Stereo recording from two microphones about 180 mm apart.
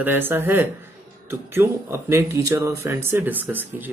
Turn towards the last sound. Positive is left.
turn(degrees=-10)  # may be behind; listen again after turning